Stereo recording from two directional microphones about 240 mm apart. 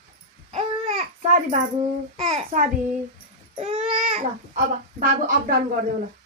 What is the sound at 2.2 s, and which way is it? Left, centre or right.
A child's voice, right.